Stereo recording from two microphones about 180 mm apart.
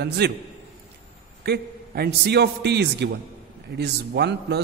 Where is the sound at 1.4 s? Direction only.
65° right (ahead or behind).